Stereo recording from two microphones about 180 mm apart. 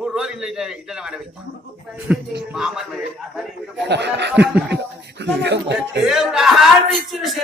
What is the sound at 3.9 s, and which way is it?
Speech, 70° right (ahead or behind).